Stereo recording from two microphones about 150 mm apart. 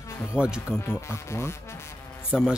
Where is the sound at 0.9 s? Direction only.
15° left (ahead or behind).